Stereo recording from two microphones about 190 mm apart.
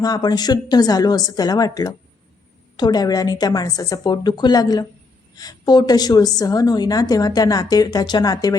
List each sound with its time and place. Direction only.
0.0 s a woman's voice: 20° left (ahead or behind)